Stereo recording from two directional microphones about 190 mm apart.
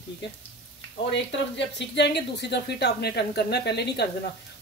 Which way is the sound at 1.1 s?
65° left (ahead or behind).